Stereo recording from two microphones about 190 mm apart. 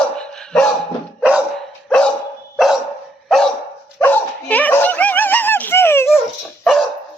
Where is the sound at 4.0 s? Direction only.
10° left (ahead or behind).